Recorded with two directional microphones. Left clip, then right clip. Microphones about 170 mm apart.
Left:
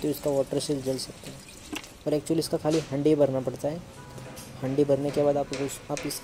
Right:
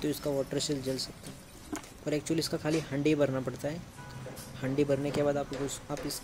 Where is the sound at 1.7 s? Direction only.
5° left (ahead or behind).